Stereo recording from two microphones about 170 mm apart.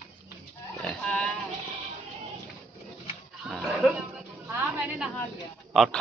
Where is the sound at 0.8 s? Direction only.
5° left (ahead or behind).